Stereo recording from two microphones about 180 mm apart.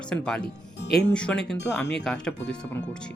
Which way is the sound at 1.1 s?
5° left (ahead or behind).